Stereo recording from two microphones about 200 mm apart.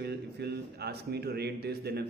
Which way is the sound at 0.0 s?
55° right (ahead or behind).